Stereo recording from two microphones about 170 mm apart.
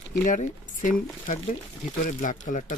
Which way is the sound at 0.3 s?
50° left (ahead or behind).